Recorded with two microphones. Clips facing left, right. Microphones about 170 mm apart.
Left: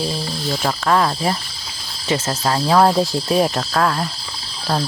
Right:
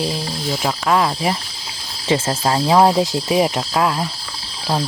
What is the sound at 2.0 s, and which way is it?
Cricket, 25° right (ahead or behind).